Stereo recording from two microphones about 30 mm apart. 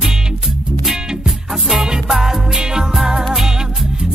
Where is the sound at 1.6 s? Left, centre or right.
Centre.